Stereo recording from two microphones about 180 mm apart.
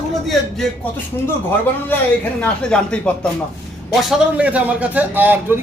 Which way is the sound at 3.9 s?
5° right (ahead or behind).